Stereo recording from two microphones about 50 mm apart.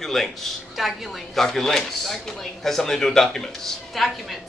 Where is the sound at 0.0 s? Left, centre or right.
Centre.